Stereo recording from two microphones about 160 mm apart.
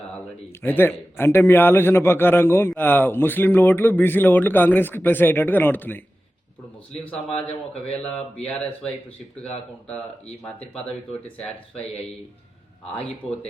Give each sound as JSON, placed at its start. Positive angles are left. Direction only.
{"t": 0.6, "sound": "a man's voice", "side_deg": 15}
{"t": 7.0, "sound": "a man's voice", "side_deg": 10}
{"t": 11.7, "sound": "speech", "side_deg": 40}
{"t": 12.9, "sound": "a man's voice", "side_deg": 10}